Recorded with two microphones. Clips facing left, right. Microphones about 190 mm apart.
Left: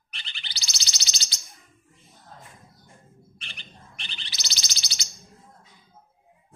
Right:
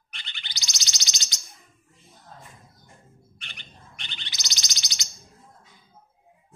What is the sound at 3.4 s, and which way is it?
Bird, 30° left (ahead or behind).